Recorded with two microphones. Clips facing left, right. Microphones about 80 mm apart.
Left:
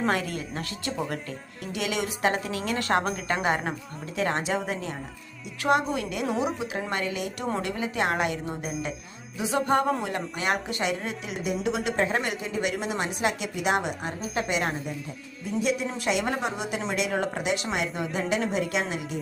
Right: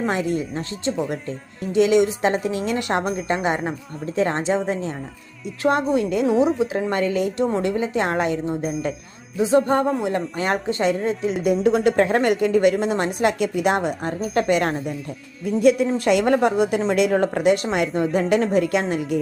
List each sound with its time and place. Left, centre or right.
0.1 s a woman's voice: right
3.0 s speech: centre
4.0 s a woman's voice: right
6.4 s speech: centre
6.9 s a woman's voice: right
11.6 s a woman's voice: right
12.7 s a woman's voice: right